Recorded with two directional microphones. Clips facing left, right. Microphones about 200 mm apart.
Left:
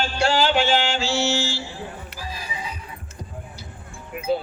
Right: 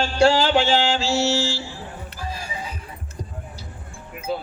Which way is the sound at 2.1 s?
50° right (ahead or behind).